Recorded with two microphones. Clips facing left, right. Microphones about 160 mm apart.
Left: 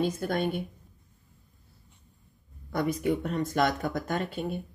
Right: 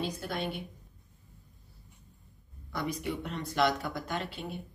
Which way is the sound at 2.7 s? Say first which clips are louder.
Left 7 dB; 50° left (ahead or behind).